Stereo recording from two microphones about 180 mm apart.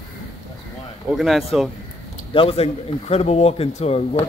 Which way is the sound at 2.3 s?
30° left (ahead or behind).